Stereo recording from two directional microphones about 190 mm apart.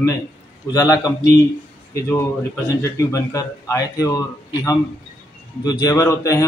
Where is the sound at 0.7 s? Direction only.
20° left (ahead or behind).